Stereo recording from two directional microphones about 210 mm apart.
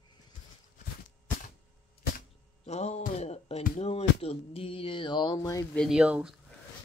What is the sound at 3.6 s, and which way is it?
Music, 30° left (ahead or behind).